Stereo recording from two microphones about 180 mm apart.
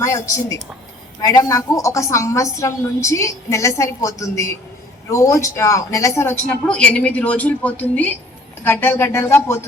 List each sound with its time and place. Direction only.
0.0 s a woman's voice: 15° left (ahead or behind)